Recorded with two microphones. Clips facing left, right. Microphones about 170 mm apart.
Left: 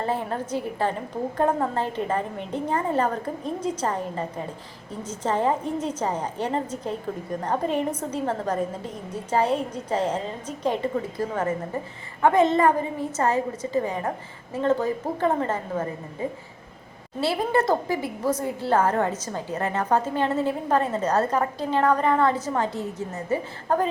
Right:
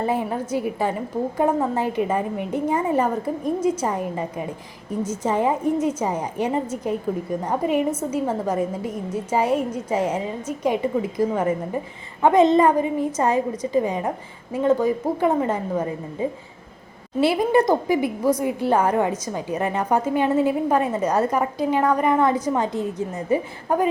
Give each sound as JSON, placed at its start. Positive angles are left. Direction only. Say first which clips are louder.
{"t": 0.0, "sound": "a woman's voice", "louder": "right 3 dB", "side_deg": -10}